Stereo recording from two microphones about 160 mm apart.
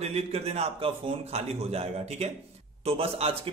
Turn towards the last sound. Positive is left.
turn(degrees=-35)  # may be behind; listen again after turning